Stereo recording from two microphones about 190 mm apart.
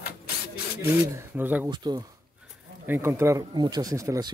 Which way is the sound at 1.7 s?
20° right (ahead or behind).